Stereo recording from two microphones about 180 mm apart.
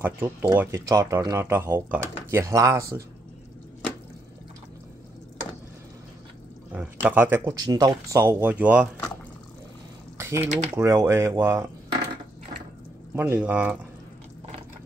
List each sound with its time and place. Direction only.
0.0 s speech: 15° right (ahead or behind)
6.7 s speech: 5° right (ahead or behind)
10.1 s typing: 15° right (ahead or behind)
10.7 s speech: 15° right (ahead or behind)
13.1 s speech: 10° right (ahead or behind)